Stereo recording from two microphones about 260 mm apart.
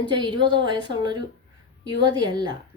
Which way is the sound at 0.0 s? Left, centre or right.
Centre.